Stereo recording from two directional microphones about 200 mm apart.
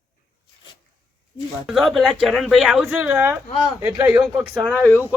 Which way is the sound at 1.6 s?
Centre (ahead or behind).